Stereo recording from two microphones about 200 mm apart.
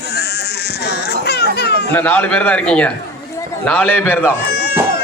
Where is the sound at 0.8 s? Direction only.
55° left (ahead or behind).